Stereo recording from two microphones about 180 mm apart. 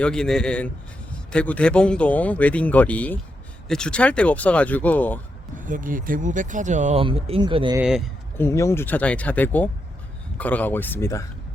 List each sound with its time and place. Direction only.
0.0 s a man's voice: 5° left (ahead or behind)
5.5 s speech: 45° right (ahead or behind)
7.0 s speech: 30° right (ahead or behind)
7.8 s a man's voice: 5° right (ahead or behind)
8.4 s speech: 15° left (ahead or behind)